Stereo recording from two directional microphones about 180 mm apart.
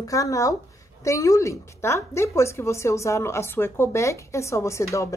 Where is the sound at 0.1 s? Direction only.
20° left (ahead or behind).